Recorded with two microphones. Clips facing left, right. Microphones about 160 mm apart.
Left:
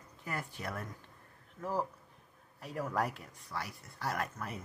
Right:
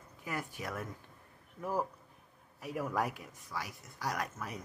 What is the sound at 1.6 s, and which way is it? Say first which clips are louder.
Speech: right 1 dB; 10° right (ahead or behind).